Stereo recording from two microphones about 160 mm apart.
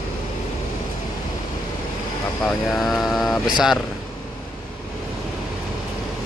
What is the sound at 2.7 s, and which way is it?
Mantra, centre (ahead or behind).